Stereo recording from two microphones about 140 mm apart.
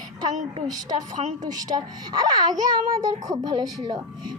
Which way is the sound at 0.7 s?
30° right (ahead or behind).